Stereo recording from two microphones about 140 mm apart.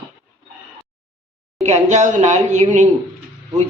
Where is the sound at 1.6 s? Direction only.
55° right (ahead or behind).